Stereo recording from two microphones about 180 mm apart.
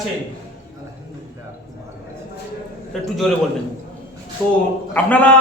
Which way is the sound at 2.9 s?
Centre (ahead or behind).